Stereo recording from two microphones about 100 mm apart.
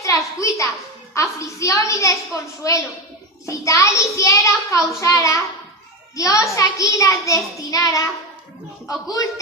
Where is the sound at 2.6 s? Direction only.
35° left (ahead or behind).